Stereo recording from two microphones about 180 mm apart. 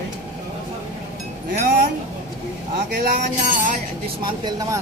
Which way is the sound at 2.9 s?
50° right (ahead or behind).